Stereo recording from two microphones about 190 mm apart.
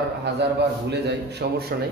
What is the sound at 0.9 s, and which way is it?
Speech, 60° right (ahead or behind).